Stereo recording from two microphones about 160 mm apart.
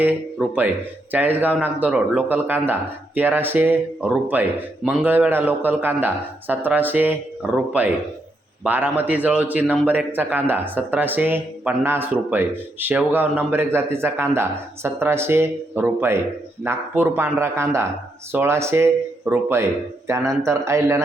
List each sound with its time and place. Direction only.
0.0 s speech: 10° right (ahead or behind)